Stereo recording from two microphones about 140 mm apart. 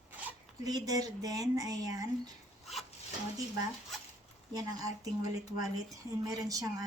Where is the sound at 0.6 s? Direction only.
25° right (ahead or behind).